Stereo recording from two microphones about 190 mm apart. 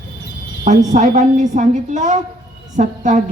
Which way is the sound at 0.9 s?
40° right (ahead or behind).